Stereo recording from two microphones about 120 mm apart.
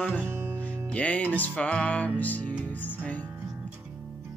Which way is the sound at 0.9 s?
10° left (ahead or behind).